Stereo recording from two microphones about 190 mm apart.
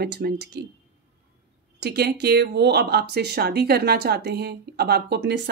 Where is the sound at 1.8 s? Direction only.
60° right (ahead or behind).